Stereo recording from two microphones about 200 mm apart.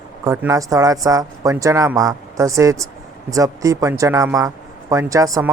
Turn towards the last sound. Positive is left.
turn(degrees=-15)  # may be behind; listen again after turning